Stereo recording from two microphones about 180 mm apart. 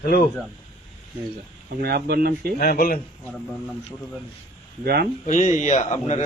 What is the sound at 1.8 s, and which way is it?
Speech, 60° right (ahead or behind).